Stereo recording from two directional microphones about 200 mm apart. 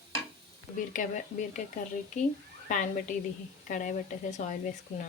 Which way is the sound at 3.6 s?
40° left (ahead or behind).